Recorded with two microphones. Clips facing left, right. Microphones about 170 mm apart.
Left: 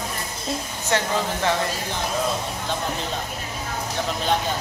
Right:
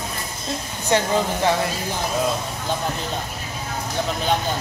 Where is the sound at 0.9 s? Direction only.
15° right (ahead or behind).